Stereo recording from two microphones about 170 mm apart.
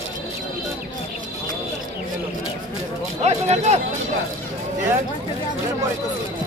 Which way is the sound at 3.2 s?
40° right (ahead or behind).